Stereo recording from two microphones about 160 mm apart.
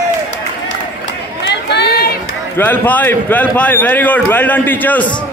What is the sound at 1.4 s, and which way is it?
Run, 90° left.